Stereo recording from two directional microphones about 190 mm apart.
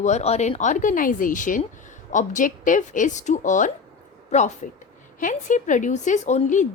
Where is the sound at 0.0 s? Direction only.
35° left (ahead or behind).